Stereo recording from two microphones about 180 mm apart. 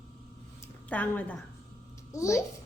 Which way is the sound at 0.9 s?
10° left (ahead or behind).